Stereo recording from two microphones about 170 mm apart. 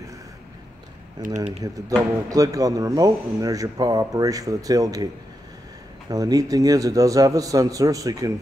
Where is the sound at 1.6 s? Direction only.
20° right (ahead or behind).